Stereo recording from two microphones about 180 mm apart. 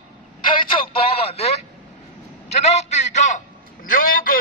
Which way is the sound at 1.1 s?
35° left (ahead or behind).